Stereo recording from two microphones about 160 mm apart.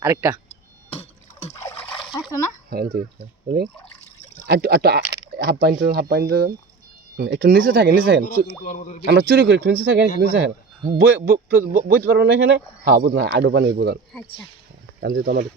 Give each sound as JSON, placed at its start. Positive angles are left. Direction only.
{"t": 0.0, "sound": "speech", "side_deg": -20}
{"t": 0.4, "sound": "a sound", "side_deg": 40}
{"t": 2.1, "sound": "a sound", "side_deg": 20}
{"t": 2.6, "sound": "speech", "side_deg": -70}
{"t": 4.4, "sound": "a man's voice", "side_deg": -85}
{"t": 5.4, "sound": "a man's voice", "side_deg": -75}
{"t": 8.6, "sound": "a man's voice", "side_deg": 55}
{"t": 9.0, "sound": "speech", "side_deg": -90}
{"t": 10.9, "sound": "a man's voice", "side_deg": -70}
{"t": 15.0, "sound": "speech", "side_deg": -65}